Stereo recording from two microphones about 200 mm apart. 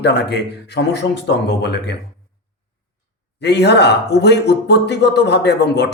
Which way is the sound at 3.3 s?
55° left (ahead or behind).